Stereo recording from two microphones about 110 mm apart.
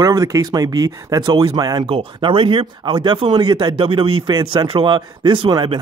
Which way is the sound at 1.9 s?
50° right (ahead or behind).